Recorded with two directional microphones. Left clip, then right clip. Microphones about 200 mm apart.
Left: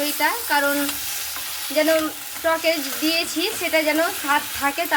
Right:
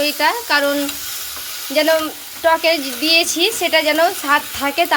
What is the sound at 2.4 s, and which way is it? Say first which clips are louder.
Speech: right 6 dB; 50° right (ahead or behind).